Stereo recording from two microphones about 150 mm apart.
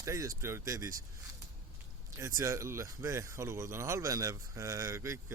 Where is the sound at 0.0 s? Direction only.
20° right (ahead or behind).